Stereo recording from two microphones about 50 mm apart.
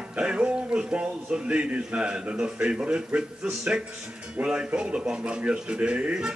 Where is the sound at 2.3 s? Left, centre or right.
Centre.